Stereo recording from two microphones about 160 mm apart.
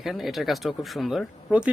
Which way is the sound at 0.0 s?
Centre (ahead or behind).